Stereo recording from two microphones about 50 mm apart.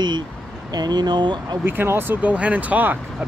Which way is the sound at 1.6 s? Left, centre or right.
Right.